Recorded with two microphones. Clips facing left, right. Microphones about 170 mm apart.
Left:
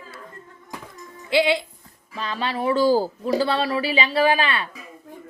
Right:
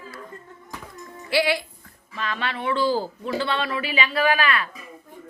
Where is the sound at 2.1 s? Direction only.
35° left (ahead or behind).